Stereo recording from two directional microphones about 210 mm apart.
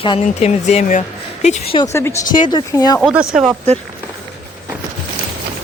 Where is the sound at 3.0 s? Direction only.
Centre (ahead or behind).